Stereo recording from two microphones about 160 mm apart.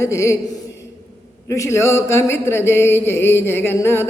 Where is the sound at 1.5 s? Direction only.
15° left (ahead or behind).